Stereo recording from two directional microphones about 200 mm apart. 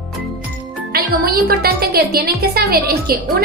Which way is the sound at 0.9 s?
50° right (ahead or behind).